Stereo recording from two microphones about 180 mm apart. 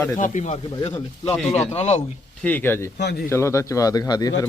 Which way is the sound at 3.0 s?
65° left (ahead or behind).